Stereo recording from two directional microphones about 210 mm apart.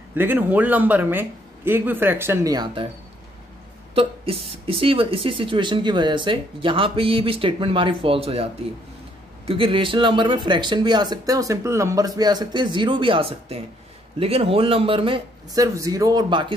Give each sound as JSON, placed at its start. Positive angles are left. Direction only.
{"t": 0.1, "sound": "speech", "side_deg": -10}
{"t": 3.9, "sound": "speech", "side_deg": -25}
{"t": 9.5, "sound": "speech", "side_deg": -25}